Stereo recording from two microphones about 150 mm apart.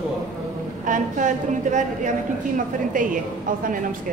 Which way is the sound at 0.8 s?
60° right (ahead or behind).